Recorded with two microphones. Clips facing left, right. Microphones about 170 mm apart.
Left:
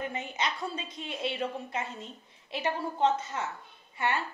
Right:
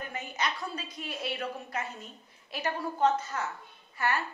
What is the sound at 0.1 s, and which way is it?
A woman's voice, 25° left (ahead or behind).